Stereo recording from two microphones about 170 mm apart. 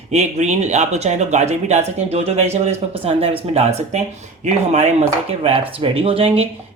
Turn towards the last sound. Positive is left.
turn(degrees=-35)  # may be behind; listen again after turning